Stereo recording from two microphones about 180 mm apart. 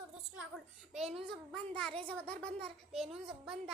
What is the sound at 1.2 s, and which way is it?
A woman's voice, 5° left (ahead or behind).